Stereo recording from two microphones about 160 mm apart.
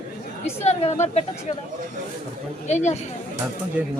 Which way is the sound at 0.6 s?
45° left (ahead or behind).